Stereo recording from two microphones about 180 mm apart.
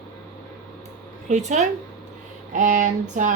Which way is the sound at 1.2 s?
40° right (ahead or behind).